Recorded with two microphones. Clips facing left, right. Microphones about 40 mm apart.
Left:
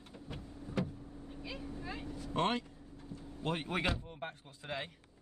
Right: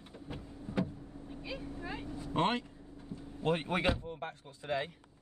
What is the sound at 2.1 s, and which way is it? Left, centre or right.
Speech, right.